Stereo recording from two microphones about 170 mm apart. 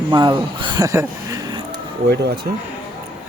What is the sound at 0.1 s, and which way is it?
Speech, 25° right (ahead or behind).